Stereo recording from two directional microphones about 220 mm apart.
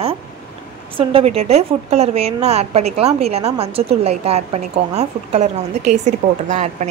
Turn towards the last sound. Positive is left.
turn(degrees=-35)  # may be behind; listen again after turning